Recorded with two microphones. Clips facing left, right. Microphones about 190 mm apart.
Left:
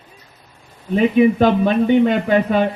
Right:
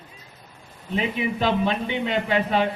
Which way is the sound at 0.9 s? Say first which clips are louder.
Left 12 dB; 50° left (ahead or behind).